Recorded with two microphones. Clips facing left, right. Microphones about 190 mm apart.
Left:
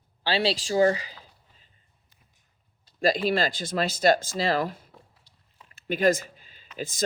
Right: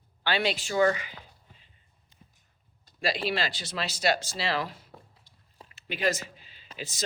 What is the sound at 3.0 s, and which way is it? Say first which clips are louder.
Speech: left 6 dB; 45° left (ahead or behind).